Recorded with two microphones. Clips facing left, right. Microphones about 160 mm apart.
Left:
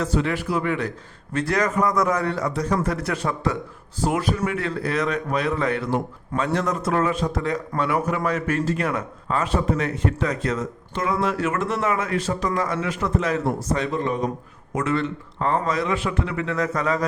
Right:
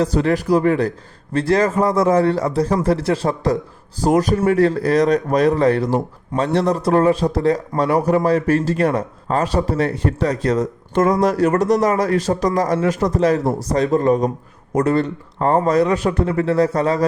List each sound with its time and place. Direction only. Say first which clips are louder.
0.0 s a man's voice: right 6 dB; 40° right (ahead or behind)